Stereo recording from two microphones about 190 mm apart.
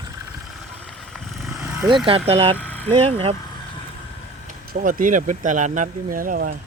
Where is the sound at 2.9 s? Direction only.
30° right (ahead or behind).